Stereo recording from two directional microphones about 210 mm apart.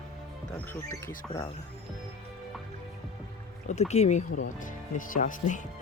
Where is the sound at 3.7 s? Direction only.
30° left (ahead or behind).